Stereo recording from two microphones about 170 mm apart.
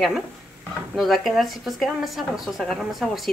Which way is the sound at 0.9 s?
Centre (ahead or behind).